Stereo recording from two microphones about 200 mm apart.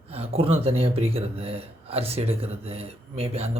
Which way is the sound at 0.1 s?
30° right (ahead or behind).